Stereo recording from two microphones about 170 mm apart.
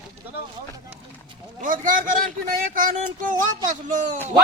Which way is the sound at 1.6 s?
50° right (ahead or behind).